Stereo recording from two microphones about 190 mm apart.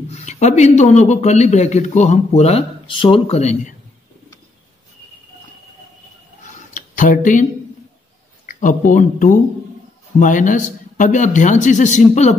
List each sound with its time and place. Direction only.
0.1 s a man's voice: 35° left (ahead or behind)
6.7 s a sound: 45° left (ahead or behind)
8.5 s a man's voice: 40° left (ahead or behind)